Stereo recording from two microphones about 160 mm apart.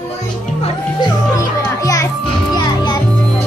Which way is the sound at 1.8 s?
20° left (ahead or behind).